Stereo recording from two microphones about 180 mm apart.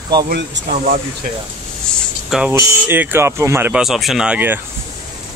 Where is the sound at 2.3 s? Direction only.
5° right (ahead or behind).